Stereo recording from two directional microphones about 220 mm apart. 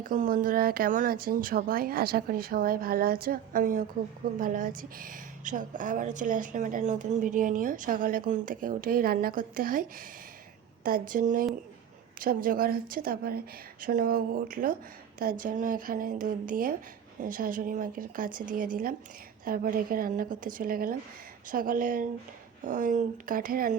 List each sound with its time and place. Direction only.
0.0 s speech: 35° right (ahead or behind)
10.8 s speech: 40° right (ahead or behind)